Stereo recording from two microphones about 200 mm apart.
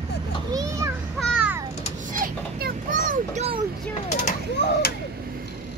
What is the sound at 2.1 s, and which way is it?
Children playing, 45° right (ahead or behind).